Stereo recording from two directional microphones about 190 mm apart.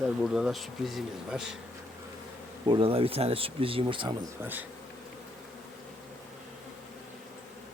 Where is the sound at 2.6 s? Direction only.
30° right (ahead or behind).